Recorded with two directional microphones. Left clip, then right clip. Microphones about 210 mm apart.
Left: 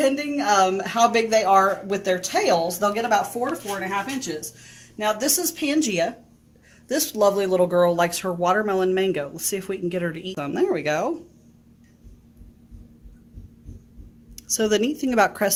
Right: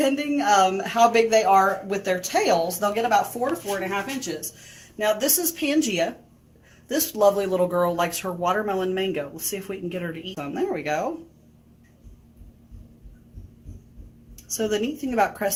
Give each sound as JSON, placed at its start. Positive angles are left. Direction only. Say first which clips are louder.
{"t": 0.0, "sound": "speech", "louder": "left 1 dB", "side_deg": 35}
{"t": 14.5, "sound": "a woman's voice", "louder": "left 4 dB", "side_deg": 55}